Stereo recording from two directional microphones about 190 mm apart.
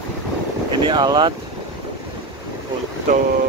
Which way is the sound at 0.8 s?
20° right (ahead or behind).